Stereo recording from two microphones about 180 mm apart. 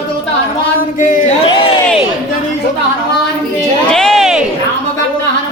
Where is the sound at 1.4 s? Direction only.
25° left (ahead or behind).